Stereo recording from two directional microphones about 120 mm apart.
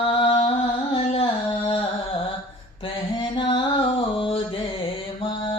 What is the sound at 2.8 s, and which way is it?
Music, 40° left (ahead or behind).